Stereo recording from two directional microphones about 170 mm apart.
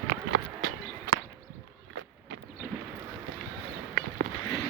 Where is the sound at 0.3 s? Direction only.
85° right.